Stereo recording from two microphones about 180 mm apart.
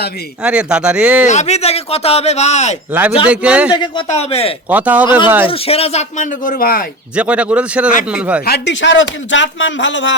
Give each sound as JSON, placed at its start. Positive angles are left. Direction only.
{"t": 0.4, "sound": "speech", "side_deg": -5}
{"t": 1.3, "sound": "speech", "side_deg": 40}
{"t": 2.9, "sound": "speech", "side_deg": -10}
{"t": 4.1, "sound": "speech", "side_deg": 35}
{"t": 4.7, "sound": "speech", "side_deg": -10}
{"t": 5.5, "sound": "speech", "side_deg": 30}
{"t": 7.2, "sound": "speech", "side_deg": -5}
{"t": 8.4, "sound": "speech", "side_deg": 75}